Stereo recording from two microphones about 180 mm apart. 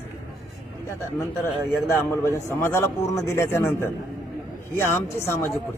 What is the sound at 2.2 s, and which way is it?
A man's voice, 15° left (ahead or behind).